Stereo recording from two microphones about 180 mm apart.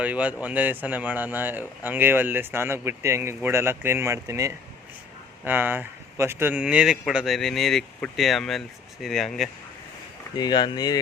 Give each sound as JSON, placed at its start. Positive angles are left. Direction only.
{"t": 0.0, "sound": "speech", "side_deg": -10}
{"t": 10.3, "sound": "speech", "side_deg": 25}